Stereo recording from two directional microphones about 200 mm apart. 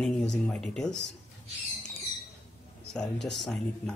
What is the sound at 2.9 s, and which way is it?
Speech, 5° left (ahead or behind).